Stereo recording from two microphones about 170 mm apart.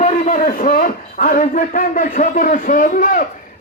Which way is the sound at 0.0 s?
50° left (ahead or behind).